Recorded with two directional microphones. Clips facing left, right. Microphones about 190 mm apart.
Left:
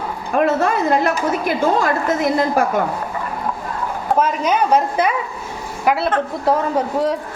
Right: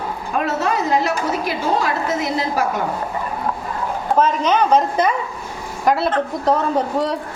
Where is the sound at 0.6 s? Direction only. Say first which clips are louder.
Left 2 dB; 55° left (ahead or behind).